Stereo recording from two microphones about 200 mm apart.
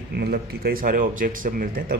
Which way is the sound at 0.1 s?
55° right (ahead or behind).